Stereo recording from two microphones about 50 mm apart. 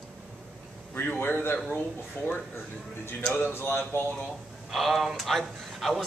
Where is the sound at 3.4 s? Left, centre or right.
Left.